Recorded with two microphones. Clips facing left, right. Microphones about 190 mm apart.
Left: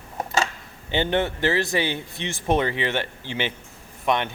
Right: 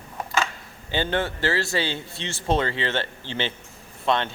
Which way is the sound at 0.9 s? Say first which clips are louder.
Left 2 dB; 20° left (ahead or behind).